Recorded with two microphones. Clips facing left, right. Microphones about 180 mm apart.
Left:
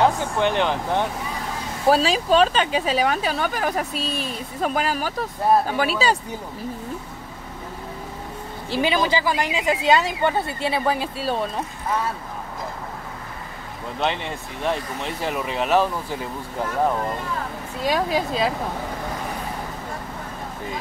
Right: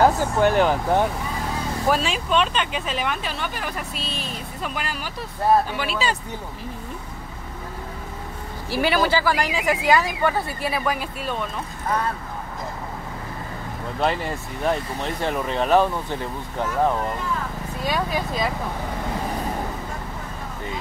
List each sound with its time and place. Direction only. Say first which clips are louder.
0.0 s speech: right 2 dB; 5° right (ahead or behind)
1.9 s speech: left 5 dB; 35° left (ahead or behind)
8.6 s speech: even; 20° left (ahead or behind)
13.9 s speech: right 2 dB; centre (ahead or behind)
17.8 s speech: left 3 dB; 30° left (ahead or behind)